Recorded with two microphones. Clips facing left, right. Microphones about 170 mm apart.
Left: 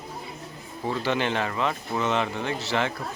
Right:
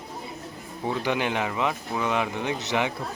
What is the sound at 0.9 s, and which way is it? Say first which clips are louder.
Speech: even; 10° right (ahead or behind).